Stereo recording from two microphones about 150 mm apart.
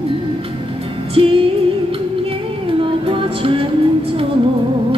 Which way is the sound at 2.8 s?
35° right (ahead or behind).